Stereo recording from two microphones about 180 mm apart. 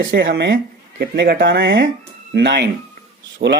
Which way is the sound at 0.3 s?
80° right.